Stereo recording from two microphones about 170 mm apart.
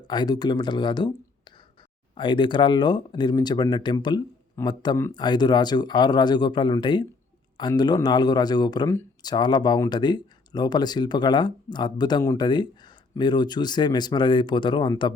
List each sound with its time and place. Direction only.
0.1 s speech: 25° left (ahead or behind)